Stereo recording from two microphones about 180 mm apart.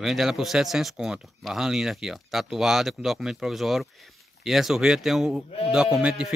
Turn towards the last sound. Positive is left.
turn(degrees=-5)  # may be behind; listen again after turning